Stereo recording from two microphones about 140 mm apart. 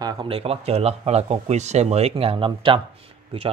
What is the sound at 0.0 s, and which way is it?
A man's voice, 40° right (ahead or behind).